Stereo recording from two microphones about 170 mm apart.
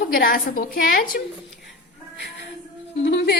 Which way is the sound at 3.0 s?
90° left.